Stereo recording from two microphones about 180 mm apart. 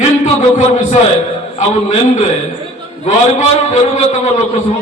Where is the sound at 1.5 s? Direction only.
45° left (ahead or behind).